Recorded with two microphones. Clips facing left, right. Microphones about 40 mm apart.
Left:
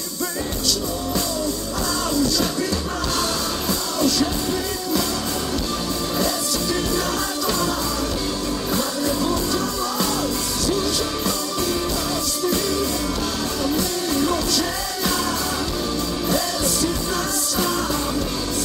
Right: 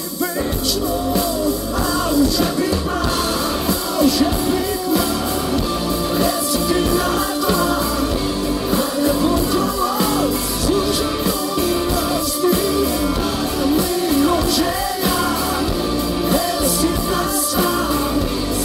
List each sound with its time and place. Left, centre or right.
4.0 s music: centre
8.7 s music: centre
13.7 s music: centre